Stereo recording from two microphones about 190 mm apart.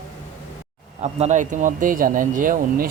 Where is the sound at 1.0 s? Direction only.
35° right (ahead or behind).